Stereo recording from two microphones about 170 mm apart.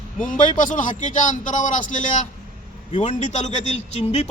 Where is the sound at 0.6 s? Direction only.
50° left (ahead or behind).